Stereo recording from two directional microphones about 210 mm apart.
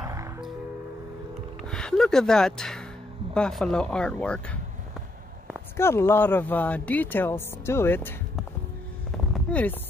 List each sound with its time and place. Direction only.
0.0 s music: 15° right (ahead or behind)
1.7 s speech: 5° left (ahead or behind)
5.8 s speech: 10° left (ahead or behind)
9.1 s a sound: 5° left (ahead or behind)